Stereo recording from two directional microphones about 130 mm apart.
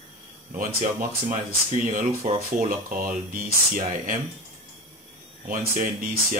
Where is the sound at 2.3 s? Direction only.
70° right (ahead or behind).